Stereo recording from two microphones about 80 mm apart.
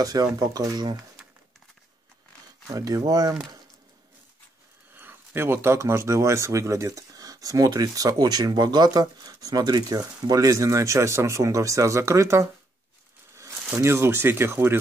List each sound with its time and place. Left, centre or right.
0.0 s speech: right
2.7 s speech: right
4.9 s speech: right
13.7 s speech: right